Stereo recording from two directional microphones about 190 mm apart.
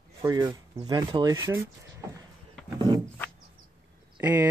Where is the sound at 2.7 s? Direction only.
25° right (ahead or behind).